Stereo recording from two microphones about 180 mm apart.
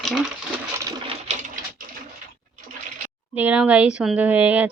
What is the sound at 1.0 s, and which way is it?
Bird, 40° right (ahead or behind).